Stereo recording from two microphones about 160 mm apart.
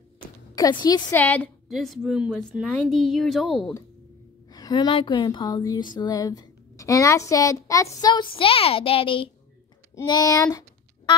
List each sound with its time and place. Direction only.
0.6 s a woman's voice: 25° left (ahead or behind)
1.1 s a woman's voice: 10° left (ahead or behind)
1.7 s a woman's voice: centre (ahead or behind)
4.5 s a woman's voice: 25° left (ahead or behind)